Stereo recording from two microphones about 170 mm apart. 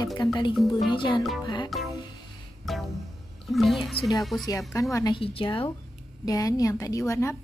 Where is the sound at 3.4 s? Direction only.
Centre (ahead or behind).